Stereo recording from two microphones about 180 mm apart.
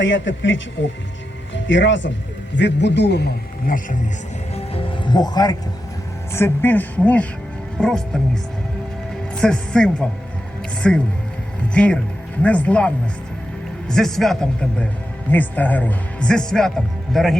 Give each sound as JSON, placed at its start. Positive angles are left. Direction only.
{"t": 0.0, "sound": "a man's voice", "side_deg": 90}
{"t": 2.6, "sound": "a man's voice", "side_deg": 75}
{"t": 4.5, "sound": "music", "side_deg": 30}
{"t": 6.3, "sound": "speech", "side_deg": 10}
{"t": 9.3, "sound": "speech", "side_deg": 5}